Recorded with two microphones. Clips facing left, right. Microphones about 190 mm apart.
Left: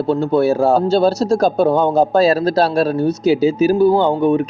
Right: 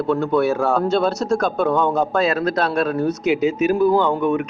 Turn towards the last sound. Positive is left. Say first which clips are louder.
# left 4 dB
turn(degrees=30)  # may be behind; listen again after turning